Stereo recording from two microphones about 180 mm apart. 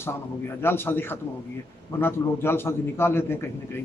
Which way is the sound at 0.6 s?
10° left (ahead or behind).